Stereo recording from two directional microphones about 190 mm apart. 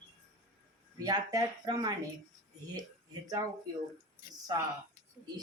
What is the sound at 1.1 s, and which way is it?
Speech, 20° right (ahead or behind).